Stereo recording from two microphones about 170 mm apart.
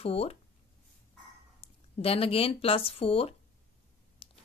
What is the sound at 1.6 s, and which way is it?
Speech, 35° left (ahead or behind).